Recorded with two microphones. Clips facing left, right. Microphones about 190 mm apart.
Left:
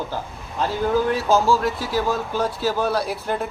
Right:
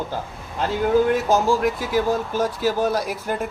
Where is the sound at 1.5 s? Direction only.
15° right (ahead or behind).